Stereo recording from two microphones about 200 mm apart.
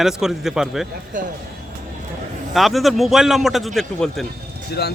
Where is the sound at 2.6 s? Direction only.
Centre (ahead or behind).